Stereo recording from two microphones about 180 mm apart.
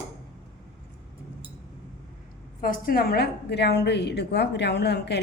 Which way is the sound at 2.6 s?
50° left (ahead or behind).